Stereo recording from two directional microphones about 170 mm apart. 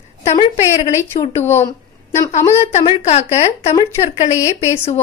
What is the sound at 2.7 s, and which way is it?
A woman's voice, 35° left (ahead or behind).